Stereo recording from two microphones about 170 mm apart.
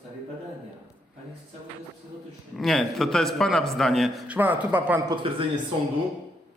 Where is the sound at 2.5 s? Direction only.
Centre (ahead or behind).